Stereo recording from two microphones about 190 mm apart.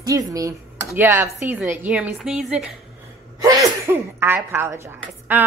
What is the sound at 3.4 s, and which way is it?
Sneeze, 20° right (ahead or behind).